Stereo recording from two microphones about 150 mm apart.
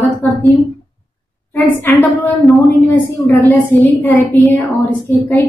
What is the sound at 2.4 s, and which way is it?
Speech, centre (ahead or behind).